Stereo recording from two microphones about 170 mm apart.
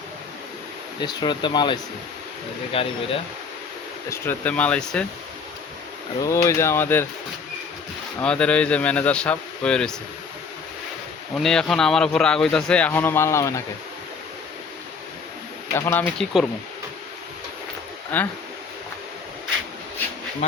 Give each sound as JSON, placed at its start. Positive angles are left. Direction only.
{"t": 1.0, "sound": "speech", "side_deg": 25}
{"t": 4.1, "sound": "speech", "side_deg": 10}
{"t": 6.2, "sound": "speech", "side_deg": 15}
{"t": 8.2, "sound": "speech", "side_deg": 5}
{"t": 11.3, "sound": "speech", "side_deg": 5}
{"t": 15.7, "sound": "speech", "side_deg": 15}
{"t": 16.1, "sound": "speech", "side_deg": 5}
{"t": 18.1, "sound": "speech", "side_deg": 10}